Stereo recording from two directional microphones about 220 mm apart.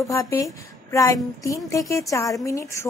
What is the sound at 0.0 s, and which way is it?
A woman's voice, 15° left (ahead or behind).